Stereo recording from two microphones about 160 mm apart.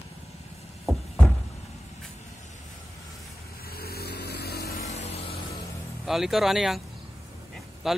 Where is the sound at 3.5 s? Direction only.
70° left (ahead or behind).